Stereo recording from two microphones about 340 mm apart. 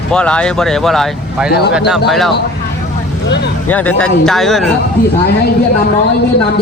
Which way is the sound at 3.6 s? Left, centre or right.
Centre.